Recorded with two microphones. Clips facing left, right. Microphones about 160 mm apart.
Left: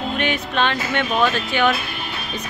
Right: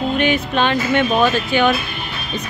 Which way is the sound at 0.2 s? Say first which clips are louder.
Right 2 dB; 5° right (ahead or behind).